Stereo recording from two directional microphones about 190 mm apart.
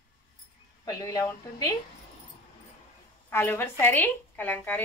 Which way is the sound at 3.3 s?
10° left (ahead or behind).